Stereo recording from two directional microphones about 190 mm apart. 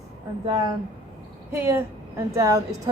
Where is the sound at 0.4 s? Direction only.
20° right (ahead or behind).